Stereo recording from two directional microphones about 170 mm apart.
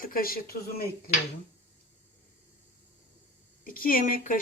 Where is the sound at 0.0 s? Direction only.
60° left (ahead or behind).